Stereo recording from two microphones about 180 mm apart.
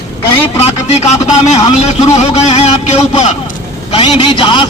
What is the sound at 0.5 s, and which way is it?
Speech, 35° left (ahead or behind).